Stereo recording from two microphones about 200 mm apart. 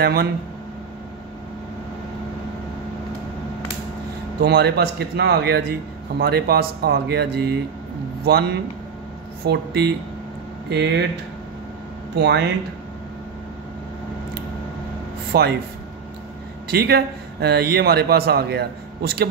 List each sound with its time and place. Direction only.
0.0 s speech: 55° right (ahead or behind)
4.4 s speech: 55° right (ahead or behind)
9.5 s speech: 55° right (ahead or behind)
12.2 s speech: 55° right (ahead or behind)
15.3 s speech: 50° right (ahead or behind)
16.6 s speech: 55° right (ahead or behind)